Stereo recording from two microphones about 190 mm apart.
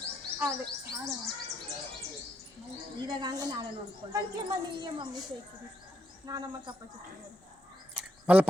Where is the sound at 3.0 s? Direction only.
20° right (ahead or behind).